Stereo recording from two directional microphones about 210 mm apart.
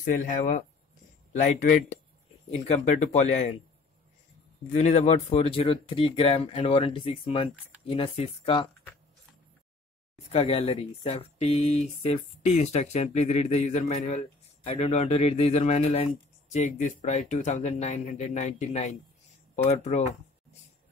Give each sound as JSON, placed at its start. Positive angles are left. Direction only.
{"t": 0.0, "sound": "speech", "side_deg": 40}
{"t": 4.7, "sound": "speech", "side_deg": 35}
{"t": 10.3, "sound": "speech", "side_deg": 30}